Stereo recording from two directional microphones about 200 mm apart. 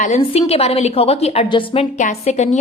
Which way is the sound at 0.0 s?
30° left (ahead or behind).